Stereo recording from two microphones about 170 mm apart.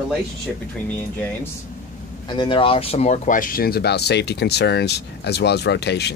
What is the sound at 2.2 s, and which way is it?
Speech, 30° left (ahead or behind).